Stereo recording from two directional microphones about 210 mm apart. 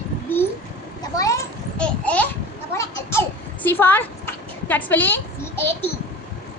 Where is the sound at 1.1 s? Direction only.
15° left (ahead or behind).